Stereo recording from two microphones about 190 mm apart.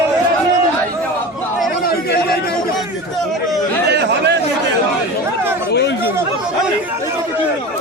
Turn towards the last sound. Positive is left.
turn(degrees=65)  # may be behind; listen again after turning